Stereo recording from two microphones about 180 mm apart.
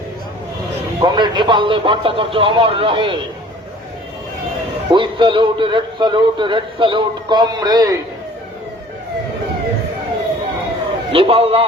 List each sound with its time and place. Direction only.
0.9 s a man's voice: 25° right (ahead or behind)
4.9 s a man's voice: 25° right (ahead or behind)
11.1 s a man's voice: 30° right (ahead or behind)